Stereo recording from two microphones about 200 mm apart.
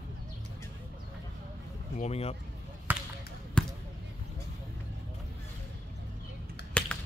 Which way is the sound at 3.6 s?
5° left (ahead or behind).